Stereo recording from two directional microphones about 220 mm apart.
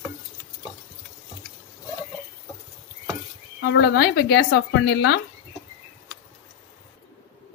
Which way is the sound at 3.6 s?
45° left (ahead or behind).